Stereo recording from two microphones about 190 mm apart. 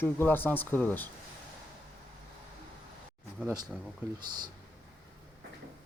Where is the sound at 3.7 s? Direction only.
5° right (ahead or behind).